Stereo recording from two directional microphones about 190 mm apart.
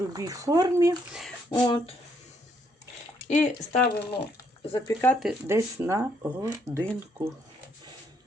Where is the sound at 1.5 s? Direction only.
25° left (ahead or behind).